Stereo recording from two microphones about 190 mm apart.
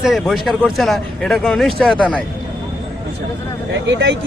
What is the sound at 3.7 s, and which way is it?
Speech, 70° right (ahead or behind).